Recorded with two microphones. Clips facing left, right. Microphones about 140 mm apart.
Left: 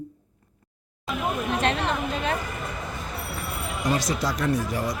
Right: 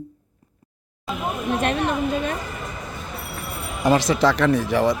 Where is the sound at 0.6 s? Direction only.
20° right (ahead or behind).